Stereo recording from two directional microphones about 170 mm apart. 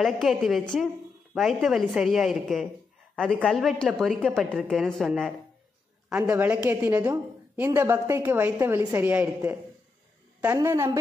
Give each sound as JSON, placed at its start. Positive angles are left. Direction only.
{"t": 0.0, "sound": "a woman's voice", "side_deg": 0}